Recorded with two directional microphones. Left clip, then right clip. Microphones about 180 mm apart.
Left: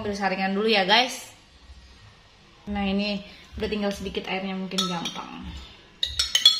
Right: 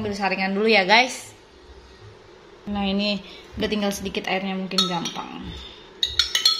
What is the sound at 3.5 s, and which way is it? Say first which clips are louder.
Speech: right 3 dB; 45° right (ahead or behind).